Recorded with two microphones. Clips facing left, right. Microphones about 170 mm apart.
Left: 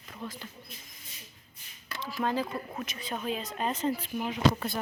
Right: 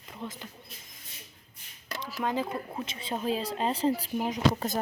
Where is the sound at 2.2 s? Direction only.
20° right (ahead or behind); by 4.8 s 40° right (ahead or behind).